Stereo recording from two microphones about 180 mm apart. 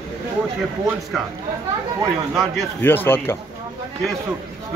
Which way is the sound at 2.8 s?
10° left (ahead or behind).